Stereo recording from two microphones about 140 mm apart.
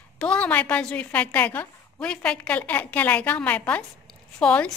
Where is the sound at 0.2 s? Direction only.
10° left (ahead or behind).